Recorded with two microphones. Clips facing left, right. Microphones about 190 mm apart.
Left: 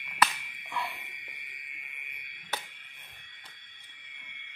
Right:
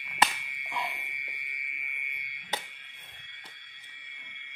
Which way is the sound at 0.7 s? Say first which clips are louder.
Even; 20° right (ahead or behind).